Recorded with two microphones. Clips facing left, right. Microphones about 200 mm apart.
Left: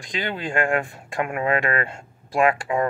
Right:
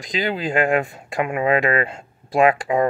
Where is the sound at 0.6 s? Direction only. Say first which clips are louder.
Right 4 dB; 20° right (ahead or behind).